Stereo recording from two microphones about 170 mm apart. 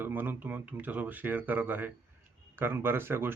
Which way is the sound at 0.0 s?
10° right (ahead or behind).